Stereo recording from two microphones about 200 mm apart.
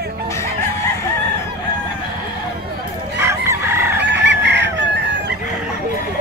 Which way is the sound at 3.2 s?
15° right (ahead or behind).